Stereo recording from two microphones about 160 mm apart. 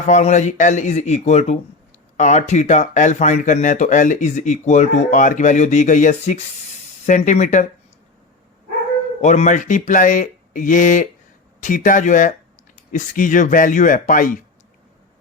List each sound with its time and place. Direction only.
0.1 s speech: 45° left (ahead or behind)
9.2 s speech: 50° left (ahead or behind)